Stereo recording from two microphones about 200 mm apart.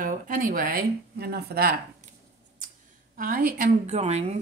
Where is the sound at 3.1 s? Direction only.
45° right (ahead or behind).